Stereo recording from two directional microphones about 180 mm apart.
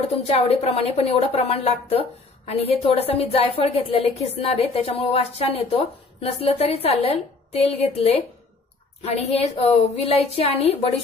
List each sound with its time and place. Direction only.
0.3 s a woman's voice: 35° left (ahead or behind)